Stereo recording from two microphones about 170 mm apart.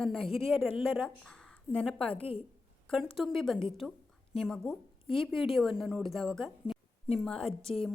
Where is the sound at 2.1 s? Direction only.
35° left (ahead or behind).